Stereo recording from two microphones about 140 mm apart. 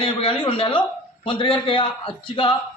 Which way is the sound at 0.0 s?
40° left (ahead or behind).